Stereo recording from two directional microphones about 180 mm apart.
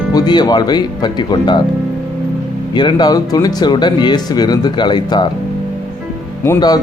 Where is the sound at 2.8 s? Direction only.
25° left (ahead or behind).